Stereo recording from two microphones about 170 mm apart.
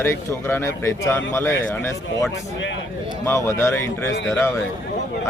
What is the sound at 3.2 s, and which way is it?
Speech, 15° left (ahead or behind).